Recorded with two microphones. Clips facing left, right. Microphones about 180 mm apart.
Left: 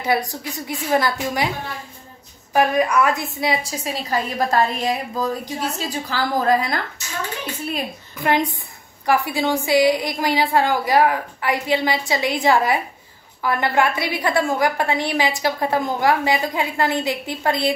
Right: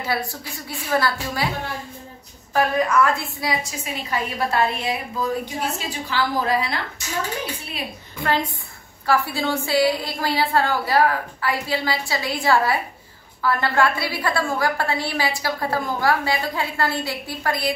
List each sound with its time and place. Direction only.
0.0 s a woman's voice: 20° left (ahead or behind)
2.5 s a woman's voice: 15° left (ahead or behind)
3.8 s a woman's voice: 40° left (ahead or behind)
8.2 s a woman's voice: 15° left (ahead or behind)